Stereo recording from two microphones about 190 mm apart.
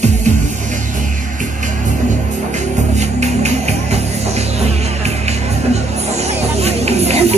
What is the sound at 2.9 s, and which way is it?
Music, 35° right (ahead or behind).